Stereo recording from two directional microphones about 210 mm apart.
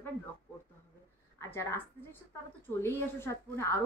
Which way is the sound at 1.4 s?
10° left (ahead or behind).